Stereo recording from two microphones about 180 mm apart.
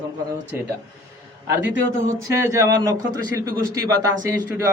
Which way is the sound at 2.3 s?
15° right (ahead or behind).